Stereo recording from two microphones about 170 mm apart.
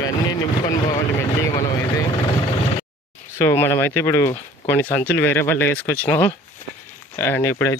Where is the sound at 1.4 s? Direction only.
20° left (ahead or behind).